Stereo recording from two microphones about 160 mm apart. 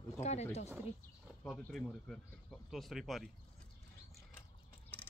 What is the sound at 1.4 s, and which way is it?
Speech, 5° left (ahead or behind).